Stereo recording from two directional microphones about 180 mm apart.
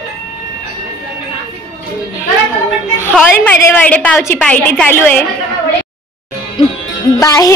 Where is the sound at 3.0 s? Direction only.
10° left (ahead or behind).